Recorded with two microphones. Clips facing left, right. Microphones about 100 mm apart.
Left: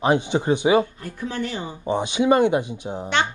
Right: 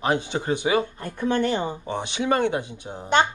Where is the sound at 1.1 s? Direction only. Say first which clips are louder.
Right 6 dB; 55° right (ahead or behind).